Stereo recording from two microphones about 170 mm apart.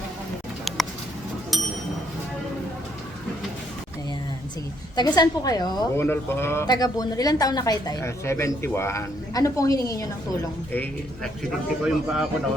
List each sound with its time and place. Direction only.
4.9 s a woman's voice: 25° left (ahead or behind)
11.8 s speech: 5° right (ahead or behind)